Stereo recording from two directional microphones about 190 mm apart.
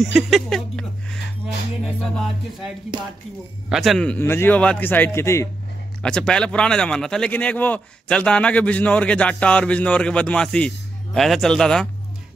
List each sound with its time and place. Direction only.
0.0 s a sound: centre (ahead or behind)
2.9 s speech: 25° right (ahead or behind)
3.6 s a man's voice: centre (ahead or behind)